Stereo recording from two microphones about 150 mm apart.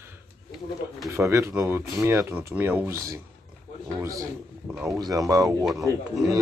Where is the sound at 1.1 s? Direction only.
20° right (ahead or behind).